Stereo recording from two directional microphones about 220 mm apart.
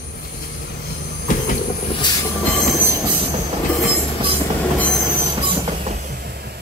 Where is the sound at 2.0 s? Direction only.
20° left (ahead or behind).